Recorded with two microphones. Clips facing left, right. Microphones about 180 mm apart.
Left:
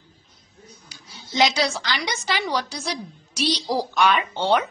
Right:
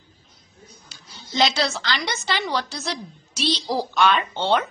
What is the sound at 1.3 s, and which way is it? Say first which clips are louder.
A woman's voice: left 1 dB; 15° left (ahead or behind).